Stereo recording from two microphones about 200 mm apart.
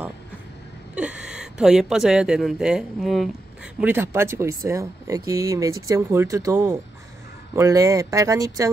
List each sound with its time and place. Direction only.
0.9 s speech: 5° right (ahead or behind)